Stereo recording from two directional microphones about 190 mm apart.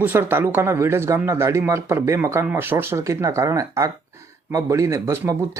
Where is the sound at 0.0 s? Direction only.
10° right (ahead or behind).